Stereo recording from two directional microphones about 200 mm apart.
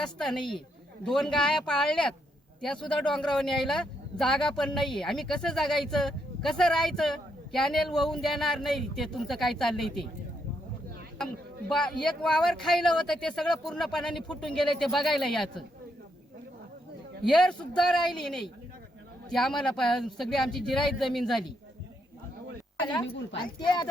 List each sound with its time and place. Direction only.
0.0 s a man's voice: centre (ahead or behind)
11.7 s a man's voice: centre (ahead or behind)
17.2 s a man's voice: centre (ahead or behind)
23.6 s speech: 20° left (ahead or behind)